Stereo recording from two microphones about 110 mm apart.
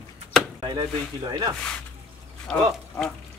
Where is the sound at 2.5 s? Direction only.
5° left (ahead or behind).